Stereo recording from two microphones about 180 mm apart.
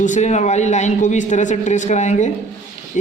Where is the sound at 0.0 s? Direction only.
40° left (ahead or behind).